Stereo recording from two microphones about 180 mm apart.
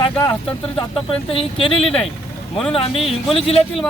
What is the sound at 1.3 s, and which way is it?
Speech, 30° left (ahead or behind).